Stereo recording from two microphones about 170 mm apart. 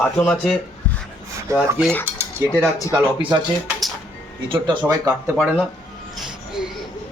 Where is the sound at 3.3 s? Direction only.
25° right (ahead or behind).